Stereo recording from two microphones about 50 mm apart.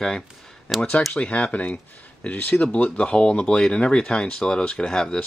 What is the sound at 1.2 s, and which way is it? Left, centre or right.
Speech, left.